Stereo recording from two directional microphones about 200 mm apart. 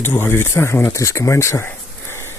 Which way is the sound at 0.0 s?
10° left (ahead or behind).